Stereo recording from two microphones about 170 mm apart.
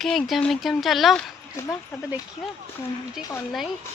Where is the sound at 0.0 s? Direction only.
Centre (ahead or behind).